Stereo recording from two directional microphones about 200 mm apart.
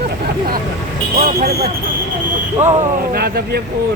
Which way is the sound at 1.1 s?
50° right (ahead or behind).